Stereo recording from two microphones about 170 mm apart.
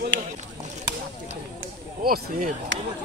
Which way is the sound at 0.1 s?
90° right.